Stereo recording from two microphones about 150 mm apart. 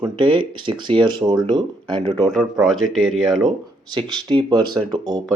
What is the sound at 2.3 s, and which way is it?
Speech, 5° right (ahead or behind).